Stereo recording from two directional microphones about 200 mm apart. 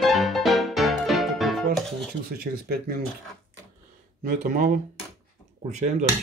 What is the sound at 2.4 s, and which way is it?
Speech, 45° right (ahead or behind).